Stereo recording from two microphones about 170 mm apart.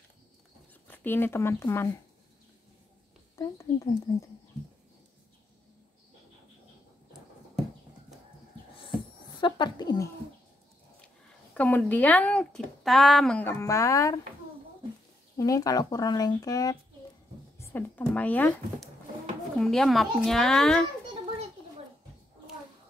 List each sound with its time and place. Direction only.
0.8 s speech: 10° left (ahead or behind)
3.3 s a sound: 20° left (ahead or behind)
9.4 s speech: 25° left (ahead or behind)
11.5 s speech: 10° left (ahead or behind)
15.3 s speech: 20° left (ahead or behind); by 20.8 s 5° left (ahead or behind)